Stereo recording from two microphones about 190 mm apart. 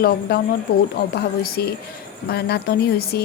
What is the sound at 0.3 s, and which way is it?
Speech, 55° left (ahead or behind).